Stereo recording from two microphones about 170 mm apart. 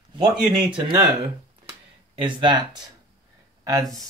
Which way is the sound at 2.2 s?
30° right (ahead or behind).